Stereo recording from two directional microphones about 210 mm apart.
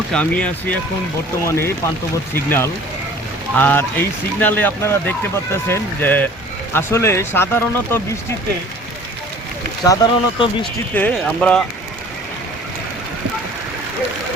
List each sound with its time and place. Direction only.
0.1 s speech: 5° left (ahead or behind)
9.8 s speech: 15° left (ahead or behind)
10.9 s speech: 5° left (ahead or behind)